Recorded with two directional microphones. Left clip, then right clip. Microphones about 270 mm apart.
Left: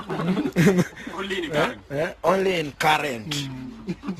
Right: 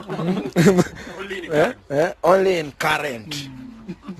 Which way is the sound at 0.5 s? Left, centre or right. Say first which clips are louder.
Right 6 dB; centre.